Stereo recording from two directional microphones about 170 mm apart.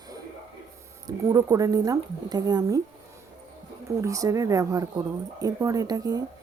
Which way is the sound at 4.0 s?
20° right (ahead or behind).